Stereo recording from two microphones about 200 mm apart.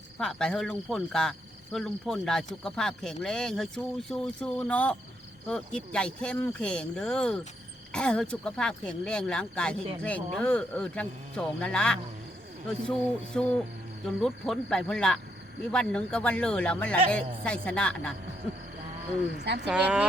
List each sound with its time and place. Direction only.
0.2 s speech: 5° left (ahead or behind)
19.3 s speech: 55° right (ahead or behind)
19.6 s speech: 5° right (ahead or behind)